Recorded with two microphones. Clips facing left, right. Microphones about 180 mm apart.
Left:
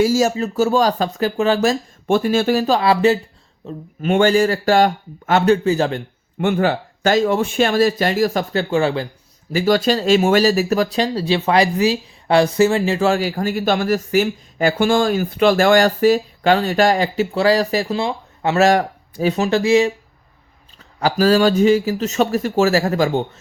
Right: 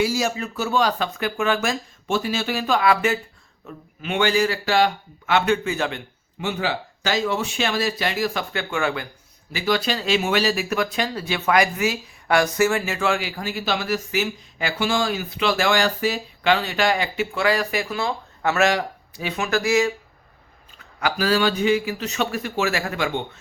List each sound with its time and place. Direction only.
0.0 s speech: 45° left (ahead or behind)
4.0 s speech: 45° left (ahead or behind)
6.4 s speech: 55° left (ahead or behind); by 9.0 s 30° left (ahead or behind)
9.5 s speech: 45° left (ahead or behind); by 18.6 s 30° left (ahead or behind)
18.6 s speech: 50° left (ahead or behind)
19.4 s speech: 30° left (ahead or behind)
21.0 s speech: 40° left (ahead or behind)